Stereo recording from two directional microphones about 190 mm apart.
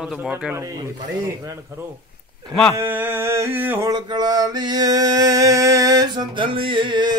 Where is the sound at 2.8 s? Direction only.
10° right (ahead or behind).